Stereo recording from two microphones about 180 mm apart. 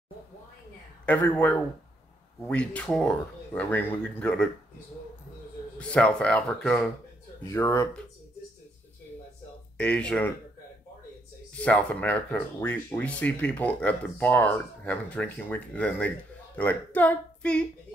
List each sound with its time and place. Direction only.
1.0 s speech: 10° left (ahead or behind)
5.8 s speech: 5° left (ahead or behind)
9.8 s speech: 5° left (ahead or behind)
11.5 s a woman's voice: 5° left (ahead or behind)